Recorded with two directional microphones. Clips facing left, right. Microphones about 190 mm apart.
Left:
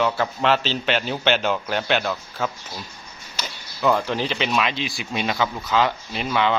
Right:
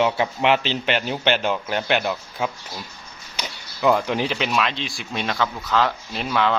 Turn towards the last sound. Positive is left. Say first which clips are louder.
# even
turn(degrees=0)  # may be behind; listen again after turning